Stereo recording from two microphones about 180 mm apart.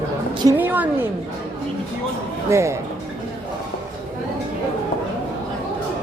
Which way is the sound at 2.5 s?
15° right (ahead or behind).